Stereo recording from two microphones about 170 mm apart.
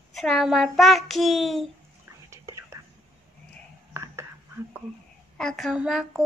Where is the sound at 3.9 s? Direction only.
15° right (ahead or behind).